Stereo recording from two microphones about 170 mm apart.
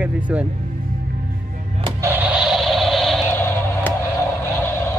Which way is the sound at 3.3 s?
15° left (ahead or behind).